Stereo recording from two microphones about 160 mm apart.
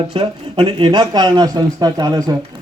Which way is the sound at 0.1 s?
35° right (ahead or behind).